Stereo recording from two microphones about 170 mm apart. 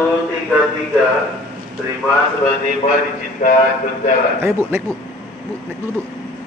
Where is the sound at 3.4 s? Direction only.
45° left (ahead or behind).